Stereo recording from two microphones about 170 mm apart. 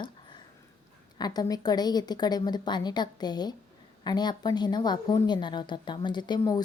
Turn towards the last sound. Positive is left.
turn(degrees=20)  # may be behind; listen again after turning